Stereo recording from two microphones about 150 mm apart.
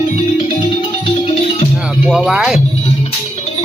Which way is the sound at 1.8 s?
5° right (ahead or behind).